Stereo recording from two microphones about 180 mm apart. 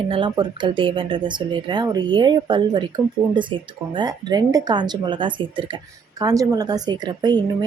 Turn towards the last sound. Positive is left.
turn(degrees=-25)  # may be behind; listen again after turning